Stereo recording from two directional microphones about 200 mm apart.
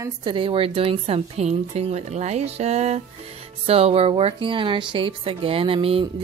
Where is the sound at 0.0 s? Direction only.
25° right (ahead or behind).